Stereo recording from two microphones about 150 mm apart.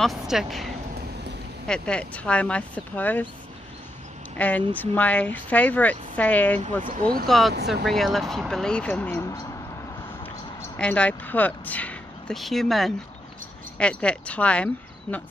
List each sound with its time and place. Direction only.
0.0 s speech: centre (ahead or behind)
4.4 s speech: 10° left (ahead or behind)
6.9 s speech: 70° right (ahead or behind)
7.2 s speech: centre (ahead or behind)
10.8 s speech: 10° left (ahead or behind)